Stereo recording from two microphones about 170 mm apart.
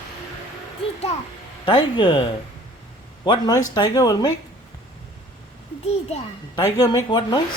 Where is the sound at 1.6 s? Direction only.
30° left (ahead or behind).